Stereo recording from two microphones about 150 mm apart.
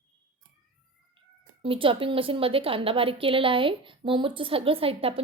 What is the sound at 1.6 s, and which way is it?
A woman's voice, 35° right (ahead or behind).